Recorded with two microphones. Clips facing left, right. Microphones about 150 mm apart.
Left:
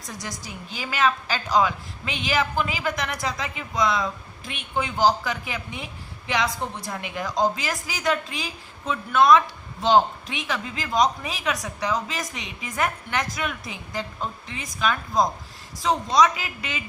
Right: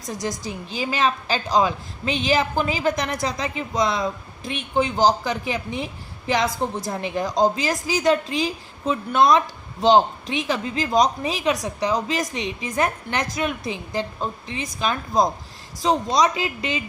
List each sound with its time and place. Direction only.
0.1 s a man's voice: 25° right (ahead or behind)
3.2 s a woman's voice: 25° right (ahead or behind)